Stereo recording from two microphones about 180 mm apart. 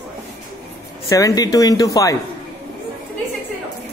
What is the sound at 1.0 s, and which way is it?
A man's voice, 15° left (ahead or behind).